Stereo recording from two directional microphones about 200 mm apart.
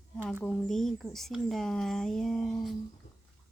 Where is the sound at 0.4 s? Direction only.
Centre (ahead or behind).